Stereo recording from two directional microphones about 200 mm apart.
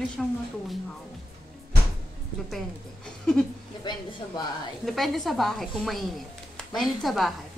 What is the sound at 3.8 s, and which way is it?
Speech, 20° left (ahead or behind).